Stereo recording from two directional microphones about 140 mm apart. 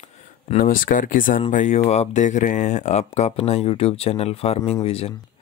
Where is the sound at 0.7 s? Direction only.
75° left (ahead or behind).